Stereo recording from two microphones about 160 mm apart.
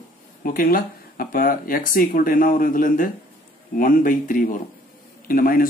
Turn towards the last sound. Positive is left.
turn(degrees=65)  # may be behind; listen again after turning